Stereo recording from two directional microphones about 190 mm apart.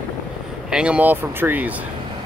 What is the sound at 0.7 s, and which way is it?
Speech, 5° right (ahead or behind).